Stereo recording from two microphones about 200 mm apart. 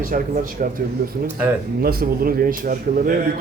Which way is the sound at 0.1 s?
45° right (ahead or behind).